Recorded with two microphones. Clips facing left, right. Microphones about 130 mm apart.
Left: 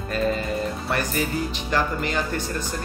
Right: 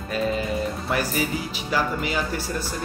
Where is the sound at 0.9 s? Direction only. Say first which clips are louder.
Even; 5° right (ahead or behind).